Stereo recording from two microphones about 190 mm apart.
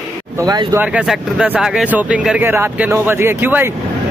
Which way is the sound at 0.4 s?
20° right (ahead or behind).